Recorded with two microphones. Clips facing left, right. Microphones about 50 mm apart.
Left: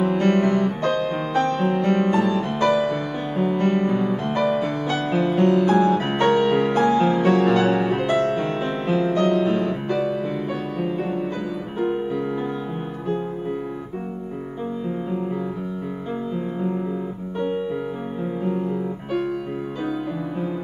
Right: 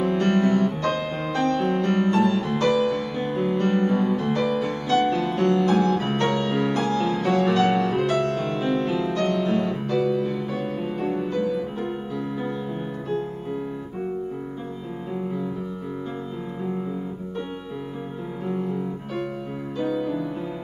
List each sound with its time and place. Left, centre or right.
0.0 s music: centre